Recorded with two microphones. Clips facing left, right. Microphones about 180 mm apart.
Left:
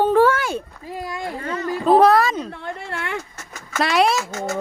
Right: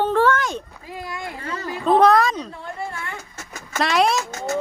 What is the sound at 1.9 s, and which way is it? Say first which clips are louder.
Speech: left 1 dB; 5° left (ahead or behind).